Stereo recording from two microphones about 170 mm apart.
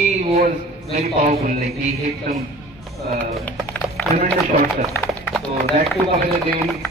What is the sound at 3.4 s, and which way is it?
Music, 10° left (ahead or behind).